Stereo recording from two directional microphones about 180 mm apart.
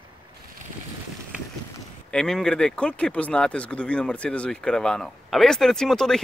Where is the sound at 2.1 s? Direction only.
5° left (ahead or behind).